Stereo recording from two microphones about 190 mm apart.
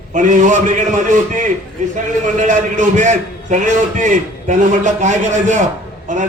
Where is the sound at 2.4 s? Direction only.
40° right (ahead or behind).